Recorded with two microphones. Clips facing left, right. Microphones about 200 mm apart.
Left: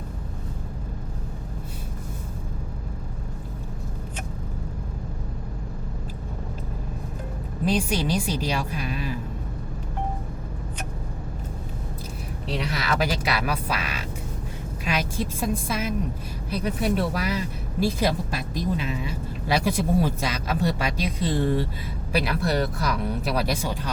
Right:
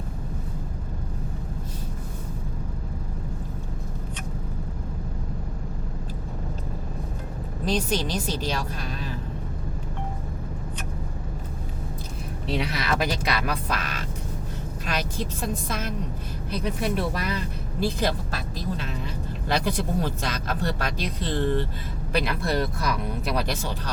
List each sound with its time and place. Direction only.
7.6 s speech: 10° left (ahead or behind)
12.5 s speech: centre (ahead or behind)